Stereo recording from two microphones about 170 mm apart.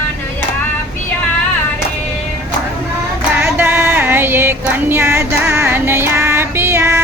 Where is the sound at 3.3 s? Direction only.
10° right (ahead or behind).